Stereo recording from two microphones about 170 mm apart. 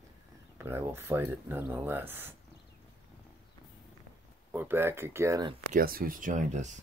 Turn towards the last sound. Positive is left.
turn(degrees=-45)  # may be behind; listen again after turning